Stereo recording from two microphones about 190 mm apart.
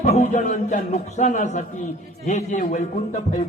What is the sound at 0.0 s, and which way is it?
A man's voice, 40° left (ahead or behind).